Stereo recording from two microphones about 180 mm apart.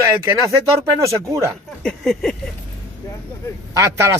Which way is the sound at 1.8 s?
5° left (ahead or behind).